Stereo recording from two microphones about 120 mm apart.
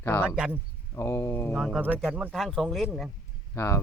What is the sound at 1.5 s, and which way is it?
Speech, 5° right (ahead or behind).